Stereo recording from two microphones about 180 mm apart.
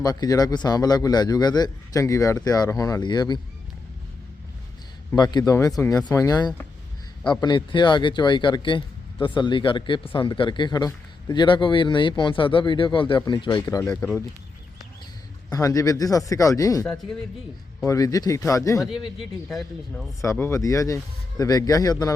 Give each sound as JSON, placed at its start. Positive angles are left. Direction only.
{"t": 0.0, "sound": "speech", "side_deg": 20}
{"t": 5.1, "sound": "speech", "side_deg": 25}
{"t": 6.1, "sound": "speech", "side_deg": 20}
{"t": 13.8, "sound": "speech", "side_deg": 10}
{"t": 15.5, "sound": "speech", "side_deg": 20}
{"t": 19.5, "sound": "speech", "side_deg": 0}
{"t": 20.2, "sound": "speech", "side_deg": 15}